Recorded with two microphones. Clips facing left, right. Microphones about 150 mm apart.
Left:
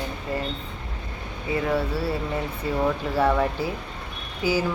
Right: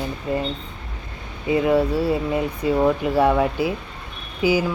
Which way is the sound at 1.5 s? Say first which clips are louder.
Right 7 dB; 15° right (ahead or behind).